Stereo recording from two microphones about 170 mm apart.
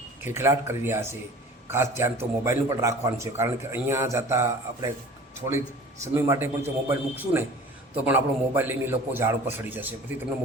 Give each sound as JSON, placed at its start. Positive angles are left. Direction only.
{"t": 0.2, "sound": "a man's voice", "side_deg": -15}
{"t": 6.1, "sound": "a man's voice", "side_deg": -15}